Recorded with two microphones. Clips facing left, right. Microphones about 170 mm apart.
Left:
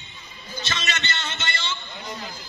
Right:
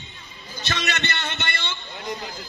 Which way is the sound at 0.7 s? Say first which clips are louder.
Right 4 dB; 60° right (ahead or behind).